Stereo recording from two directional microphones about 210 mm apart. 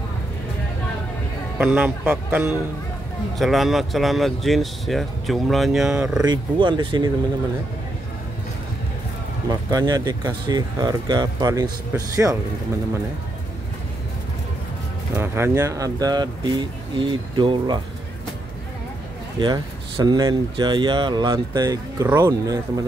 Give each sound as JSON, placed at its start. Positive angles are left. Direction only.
{"t": 1.6, "sound": "speech", "side_deg": -10}
{"t": 6.2, "sound": "speech", "side_deg": -20}
{"t": 9.5, "sound": "speech", "side_deg": -20}
{"t": 15.1, "sound": "speech", "side_deg": -10}
{"t": 19.4, "sound": "speech", "side_deg": -20}